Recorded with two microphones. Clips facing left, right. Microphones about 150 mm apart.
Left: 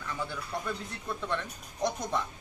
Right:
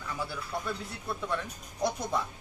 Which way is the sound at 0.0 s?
5° right (ahead or behind).